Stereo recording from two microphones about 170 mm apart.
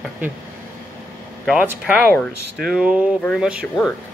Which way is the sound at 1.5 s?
5° right (ahead or behind).